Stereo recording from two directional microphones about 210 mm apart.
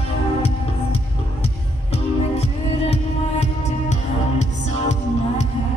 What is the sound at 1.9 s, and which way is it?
Music, 30° left (ahead or behind).